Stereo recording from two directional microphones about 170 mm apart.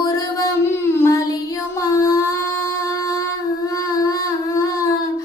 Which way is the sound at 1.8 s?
20° left (ahead or behind).